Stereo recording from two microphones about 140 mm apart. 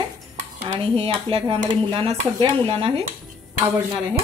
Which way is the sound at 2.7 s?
40° right (ahead or behind).